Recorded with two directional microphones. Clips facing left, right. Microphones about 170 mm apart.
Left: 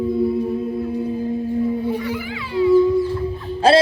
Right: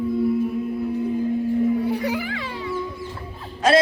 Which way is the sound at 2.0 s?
70° right (ahead or behind).